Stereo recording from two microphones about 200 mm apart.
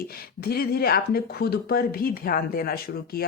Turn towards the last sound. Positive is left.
turn(degrees=50)  # may be behind; listen again after turning